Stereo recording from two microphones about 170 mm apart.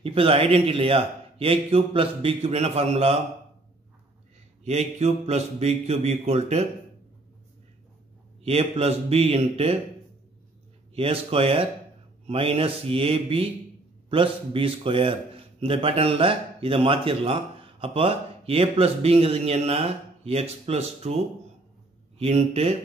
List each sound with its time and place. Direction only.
0.0 s a man's voice: 35° right (ahead or behind)
4.6 s a man's voice: 40° right (ahead or behind)
8.5 s a man's voice: 35° right (ahead or behind)
11.0 s a man's voice: 35° right (ahead or behind)
22.2 s a man's voice: 35° right (ahead or behind)